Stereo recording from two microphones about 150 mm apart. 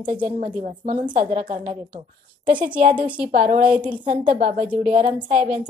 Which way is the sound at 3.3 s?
60° right (ahead or behind).